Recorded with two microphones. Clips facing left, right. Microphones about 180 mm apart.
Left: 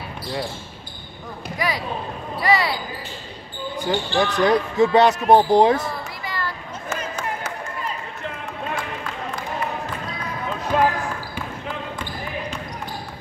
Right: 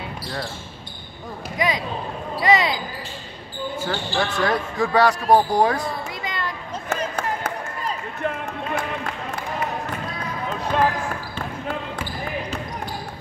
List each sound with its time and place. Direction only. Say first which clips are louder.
1.6 s speech: right 1 dB; 20° right (ahead or behind)
3.8 s speech: left 5 dB; 15° left (ahead or behind)
6.2 s a sound: left 1 dB; 20° right (ahead or behind)
6.9 s run: right 3 dB; 60° right (ahead or behind)
10.7 s speech: left 2 dB; 5° left (ahead or behind)